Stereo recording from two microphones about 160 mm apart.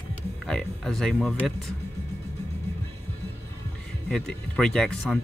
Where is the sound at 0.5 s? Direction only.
5° left (ahead or behind).